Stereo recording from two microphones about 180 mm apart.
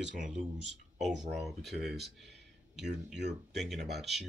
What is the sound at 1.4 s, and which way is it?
Speech, centre (ahead or behind).